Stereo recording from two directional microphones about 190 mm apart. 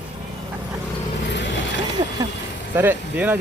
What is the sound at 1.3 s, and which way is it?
Mechanisms, 70° left (ahead or behind).